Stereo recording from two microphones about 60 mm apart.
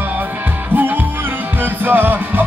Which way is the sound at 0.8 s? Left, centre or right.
Right.